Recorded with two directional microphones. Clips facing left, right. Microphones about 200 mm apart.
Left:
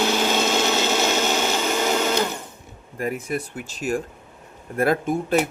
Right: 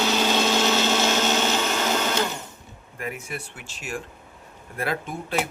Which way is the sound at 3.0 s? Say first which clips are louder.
Left 7 dB; 40° left (ahead or behind).